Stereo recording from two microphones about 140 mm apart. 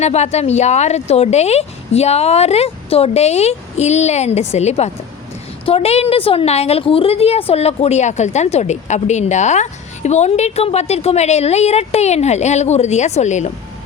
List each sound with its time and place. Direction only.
0.0 s a woman's voice: 50° left (ahead or behind)